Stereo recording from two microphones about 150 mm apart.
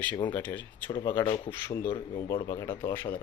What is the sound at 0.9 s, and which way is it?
Speech, 30° left (ahead or behind).